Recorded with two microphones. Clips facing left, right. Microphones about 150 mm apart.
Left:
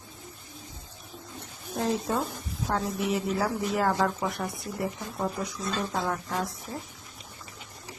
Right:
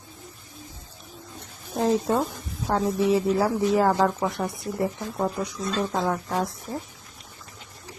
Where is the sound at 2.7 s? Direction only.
35° right (ahead or behind).